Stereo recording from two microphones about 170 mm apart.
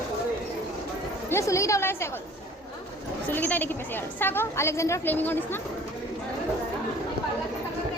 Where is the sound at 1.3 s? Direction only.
15° left (ahead or behind).